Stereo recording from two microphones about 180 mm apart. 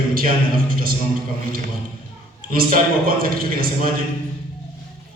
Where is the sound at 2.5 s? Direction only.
50° right (ahead or behind).